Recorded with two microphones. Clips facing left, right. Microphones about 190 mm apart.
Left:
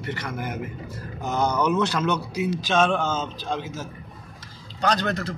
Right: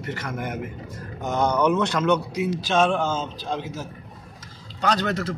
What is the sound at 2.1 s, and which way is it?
Speech, centre (ahead or behind).